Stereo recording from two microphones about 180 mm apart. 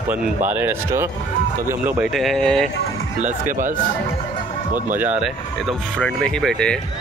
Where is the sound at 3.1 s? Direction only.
45° right (ahead or behind).